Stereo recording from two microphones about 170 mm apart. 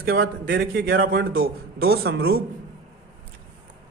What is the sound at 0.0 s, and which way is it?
A man's voice, 60° right (ahead or behind).